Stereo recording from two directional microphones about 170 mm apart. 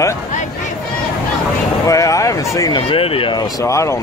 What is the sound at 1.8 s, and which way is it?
Speech, 20° left (ahead or behind).